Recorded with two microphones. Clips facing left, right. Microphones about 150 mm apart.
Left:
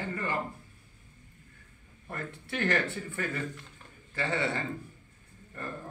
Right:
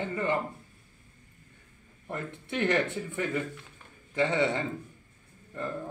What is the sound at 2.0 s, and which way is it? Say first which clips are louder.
Speech: right 3 dB; 20° right (ahead or behind).